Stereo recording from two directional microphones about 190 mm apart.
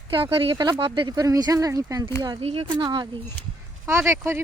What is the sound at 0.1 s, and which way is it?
Speech, 25° right (ahead or behind).